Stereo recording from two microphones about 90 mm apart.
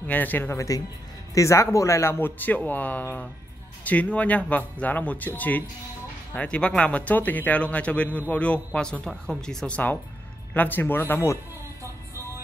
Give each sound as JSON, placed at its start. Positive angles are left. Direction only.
{"t": 0.0, "sound": "speech", "side_deg": 20}
{"t": 0.6, "sound": "speech", "side_deg": 40}
{"t": 10.5, "sound": "speech", "side_deg": 20}